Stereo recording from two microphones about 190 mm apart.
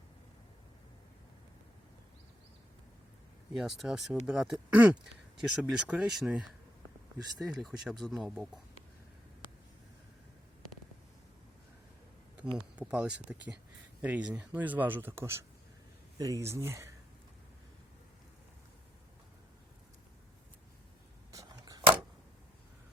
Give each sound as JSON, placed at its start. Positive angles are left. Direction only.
{"t": 3.5, "sound": "speech", "side_deg": 0}
{"t": 12.7, "sound": "speech", "side_deg": -5}
{"t": 21.3, "sound": "a sound", "side_deg": -20}